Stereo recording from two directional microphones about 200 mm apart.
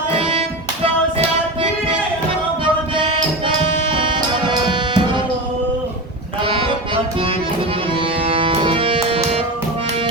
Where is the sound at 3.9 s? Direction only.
25° right (ahead or behind).